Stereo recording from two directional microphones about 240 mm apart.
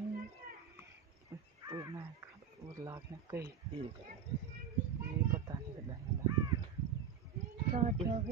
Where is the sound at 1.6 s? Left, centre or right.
Centre.